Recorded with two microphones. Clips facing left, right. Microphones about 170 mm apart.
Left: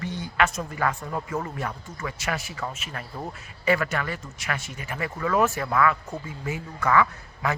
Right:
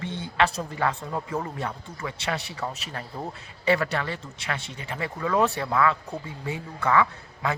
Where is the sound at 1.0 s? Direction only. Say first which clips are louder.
Even; 15° right (ahead or behind).